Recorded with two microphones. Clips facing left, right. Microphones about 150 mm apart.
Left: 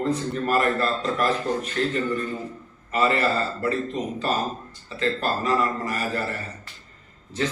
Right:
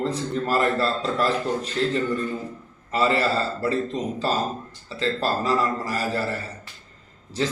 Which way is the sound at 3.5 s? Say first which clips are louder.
Right 1 dB; 35° right (ahead or behind).